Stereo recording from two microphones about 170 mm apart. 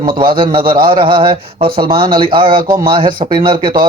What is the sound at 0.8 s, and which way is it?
Speech, 30° right (ahead or behind).